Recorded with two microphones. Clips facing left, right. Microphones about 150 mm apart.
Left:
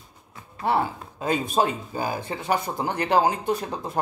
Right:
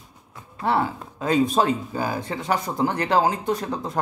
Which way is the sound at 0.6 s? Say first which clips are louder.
Right 1 dB; 15° left (ahead or behind).